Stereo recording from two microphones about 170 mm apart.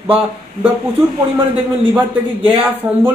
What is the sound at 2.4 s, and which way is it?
Speech, 10° right (ahead or behind).